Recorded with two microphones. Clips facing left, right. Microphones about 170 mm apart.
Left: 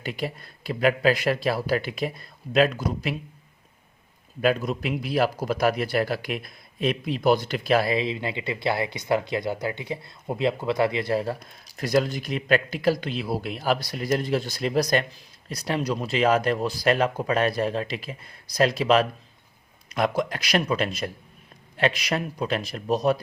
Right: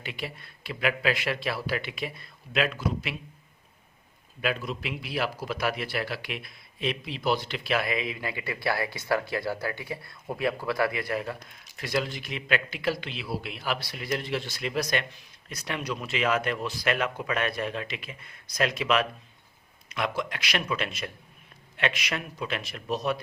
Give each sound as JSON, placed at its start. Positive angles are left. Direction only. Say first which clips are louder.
{"t": 0.0, "sound": "a man's voice", "louder": "left 6 dB", "side_deg": 40}
{"t": 4.4, "sound": "a man's voice", "louder": "left 7 dB", "side_deg": 40}